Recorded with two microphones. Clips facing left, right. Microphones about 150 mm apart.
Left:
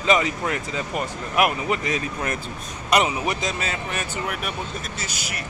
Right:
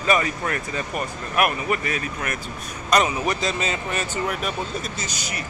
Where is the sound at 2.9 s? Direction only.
10° left (ahead or behind).